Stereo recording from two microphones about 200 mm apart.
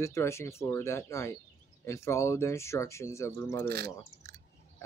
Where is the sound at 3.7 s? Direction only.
50° right (ahead or behind).